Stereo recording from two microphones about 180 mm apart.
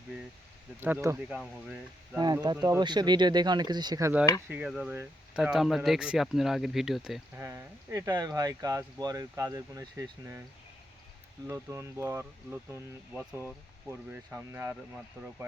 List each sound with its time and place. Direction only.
0.8 s speech: 10° right (ahead or behind)
2.1 s speech: 20° right (ahead or behind)
4.4 s speech: 5° right (ahead or behind)
7.3 s speech: 15° right (ahead or behind)
11.4 s speech: 15° right (ahead or behind)
14.1 s speech: 10° right (ahead or behind)